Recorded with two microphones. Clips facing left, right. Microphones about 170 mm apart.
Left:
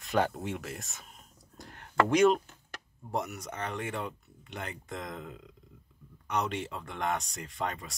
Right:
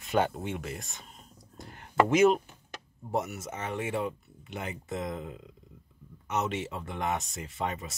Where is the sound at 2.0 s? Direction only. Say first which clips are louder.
Even; 5° right (ahead or behind).